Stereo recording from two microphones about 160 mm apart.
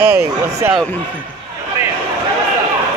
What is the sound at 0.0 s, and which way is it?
Speech, 20° right (ahead or behind).